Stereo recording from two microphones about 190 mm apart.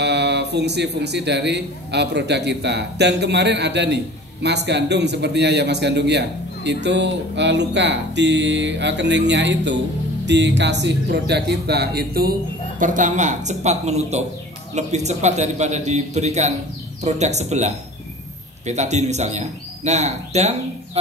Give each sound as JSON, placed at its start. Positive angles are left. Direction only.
{"t": 0.0, "sound": "speech", "side_deg": -65}